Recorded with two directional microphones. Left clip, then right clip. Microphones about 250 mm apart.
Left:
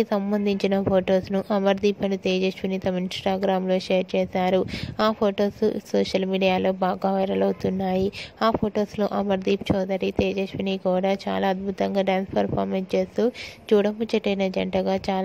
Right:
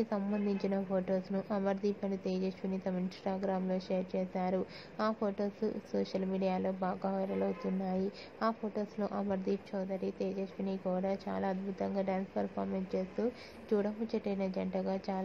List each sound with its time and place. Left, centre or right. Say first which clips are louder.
0.0 s a woman's voice: left 12 dB; left